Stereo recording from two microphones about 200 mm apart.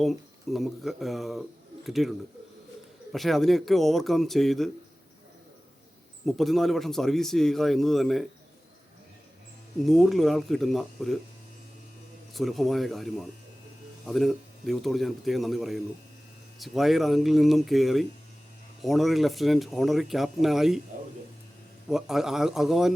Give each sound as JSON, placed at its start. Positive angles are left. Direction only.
{"t": 0.0, "sound": "a man's voice", "side_deg": 0}
{"t": 6.2, "sound": "a man's voice", "side_deg": 0}
{"t": 9.8, "sound": "a man's voice", "side_deg": 0}
{"t": 12.3, "sound": "a man's voice", "side_deg": 0}
{"t": 21.8, "sound": "a man's voice", "side_deg": 0}